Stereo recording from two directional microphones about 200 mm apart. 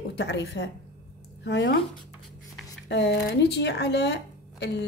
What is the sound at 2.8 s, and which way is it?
A woman's voice, 60° left (ahead or behind).